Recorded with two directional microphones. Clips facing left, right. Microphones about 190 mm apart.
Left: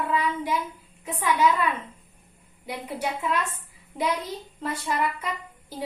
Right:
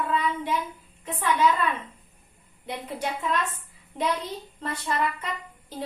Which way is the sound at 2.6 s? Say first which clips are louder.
Left 1 dB; 10° left (ahead or behind).